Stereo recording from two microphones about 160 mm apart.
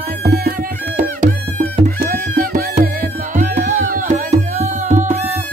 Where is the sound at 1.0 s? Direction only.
50° right (ahead or behind).